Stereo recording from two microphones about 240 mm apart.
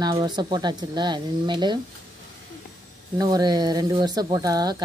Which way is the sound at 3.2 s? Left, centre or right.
Centre.